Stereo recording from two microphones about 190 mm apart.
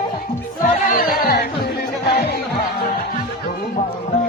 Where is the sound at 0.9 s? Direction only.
50° left (ahead or behind).